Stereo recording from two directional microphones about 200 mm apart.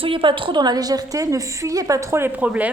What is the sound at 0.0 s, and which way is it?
A woman's voice, 25° right (ahead or behind).